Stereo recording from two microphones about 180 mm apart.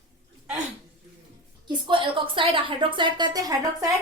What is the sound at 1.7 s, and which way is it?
A woman's voice, 30° right (ahead or behind).